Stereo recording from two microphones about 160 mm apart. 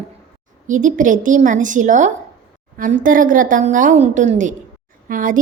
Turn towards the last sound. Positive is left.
turn(degrees=-55)  # may be behind; listen again after turning